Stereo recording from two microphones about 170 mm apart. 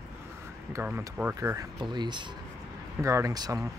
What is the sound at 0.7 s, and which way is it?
Speech, 10° right (ahead or behind).